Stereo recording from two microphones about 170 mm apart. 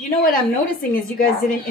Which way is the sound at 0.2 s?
55° left (ahead or behind).